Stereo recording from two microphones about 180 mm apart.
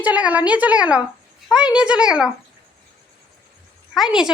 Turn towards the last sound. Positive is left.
turn(degrees=-5)  # may be behind; listen again after turning